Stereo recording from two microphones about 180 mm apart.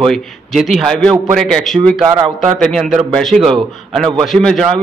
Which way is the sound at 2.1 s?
20° right (ahead or behind).